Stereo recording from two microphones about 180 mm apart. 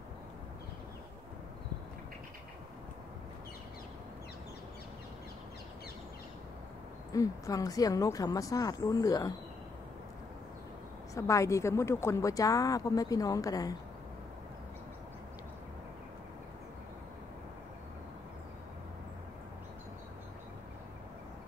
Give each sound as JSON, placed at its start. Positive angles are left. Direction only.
{"t": 7.1, "sound": "speech", "side_deg": 20}
{"t": 11.1, "sound": "speech", "side_deg": 15}